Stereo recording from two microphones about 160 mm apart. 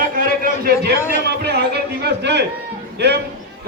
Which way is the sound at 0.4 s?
65° right (ahead or behind).